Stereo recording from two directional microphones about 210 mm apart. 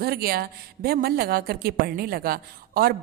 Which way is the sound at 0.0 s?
45° right (ahead or behind).